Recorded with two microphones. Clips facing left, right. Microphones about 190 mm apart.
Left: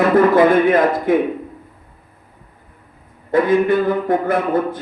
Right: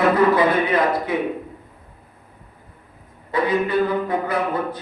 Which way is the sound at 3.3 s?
50° left (ahead or behind).